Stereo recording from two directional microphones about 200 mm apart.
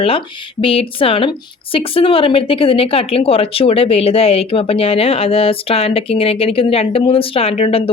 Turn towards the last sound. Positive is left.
turn(degrees=30)  # may be behind; listen again after turning